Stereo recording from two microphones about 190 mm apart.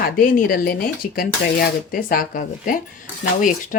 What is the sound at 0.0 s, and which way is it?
Speech, 50° left (ahead or behind).